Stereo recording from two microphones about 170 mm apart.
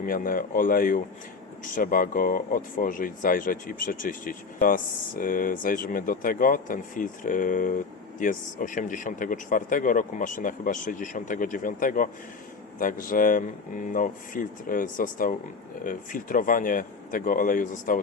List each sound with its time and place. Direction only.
0.0 s speech: 55° left (ahead or behind)